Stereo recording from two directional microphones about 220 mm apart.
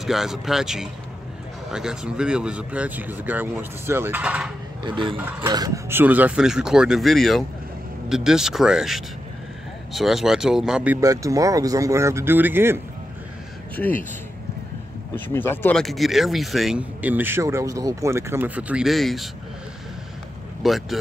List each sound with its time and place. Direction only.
0.0 s speech: centre (ahead or behind)
4.8 s speech: 20° right (ahead or behind)
5.1 s speech: 10° right (ahead or behind)
15.1 s speech: 10° left (ahead or behind)
20.6 s speech: centre (ahead or behind)